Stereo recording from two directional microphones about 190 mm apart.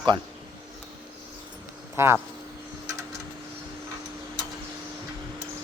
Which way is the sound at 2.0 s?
15° right (ahead or behind).